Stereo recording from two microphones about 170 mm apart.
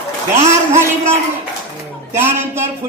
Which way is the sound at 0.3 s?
15° right (ahead or behind).